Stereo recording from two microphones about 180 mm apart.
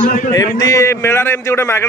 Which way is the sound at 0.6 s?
20° left (ahead or behind).